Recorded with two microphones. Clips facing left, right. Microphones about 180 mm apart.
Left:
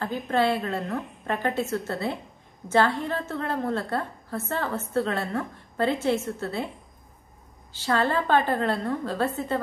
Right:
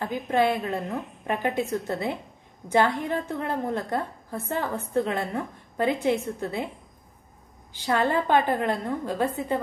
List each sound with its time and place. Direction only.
0.0 s a woman's voice: 15° right (ahead or behind)
7.7 s a woman's voice: 15° right (ahead or behind)